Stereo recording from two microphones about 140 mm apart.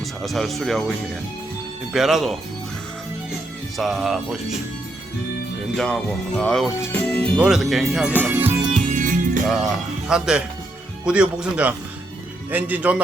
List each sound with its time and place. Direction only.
0.0 s speech: centre (ahead or behind)
3.8 s speech: centre (ahead or behind)
5.7 s speech: 5° left (ahead or behind)
7.3 s speech: 5° right (ahead or behind)
8.1 s speech: 10° right (ahead or behind)
8.8 s music: 70° right (ahead or behind)
10.1 s speech: 5° right (ahead or behind)